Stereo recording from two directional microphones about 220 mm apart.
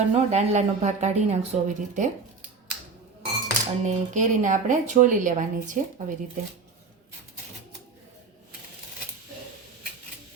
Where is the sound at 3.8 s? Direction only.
35° right (ahead or behind).